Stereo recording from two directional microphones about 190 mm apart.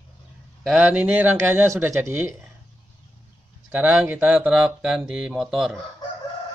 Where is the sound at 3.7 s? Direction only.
10° right (ahead or behind).